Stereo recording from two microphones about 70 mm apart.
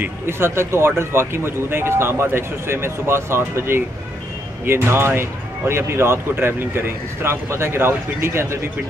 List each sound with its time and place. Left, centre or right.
0.0 s speech: right